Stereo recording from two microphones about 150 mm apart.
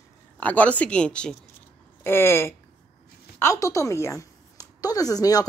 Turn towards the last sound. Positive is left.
turn(degrees=25)  # may be behind; listen again after turning